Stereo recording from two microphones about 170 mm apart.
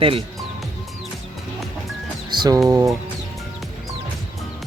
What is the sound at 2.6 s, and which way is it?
Speech, 20° right (ahead or behind).